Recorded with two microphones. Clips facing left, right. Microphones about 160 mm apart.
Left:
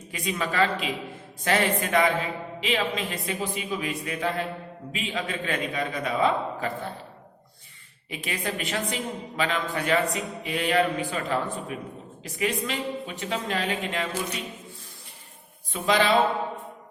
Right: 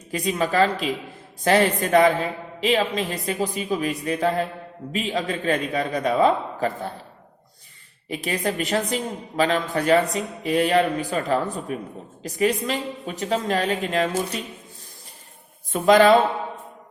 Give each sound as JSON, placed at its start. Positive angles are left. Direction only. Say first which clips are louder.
{"t": 0.1, "sound": "a woman's voice", "louder": "right 6 dB", "side_deg": -40}
{"t": 8.1, "sound": "a woman's voice", "louder": "right 6 dB", "side_deg": -40}
{"t": 15.7, "sound": "speech", "louder": "right 8 dB", "side_deg": -45}